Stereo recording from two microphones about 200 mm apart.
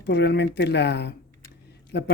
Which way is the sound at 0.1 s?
55° left (ahead or behind).